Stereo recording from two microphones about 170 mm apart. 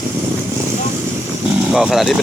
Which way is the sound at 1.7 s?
5° right (ahead or behind).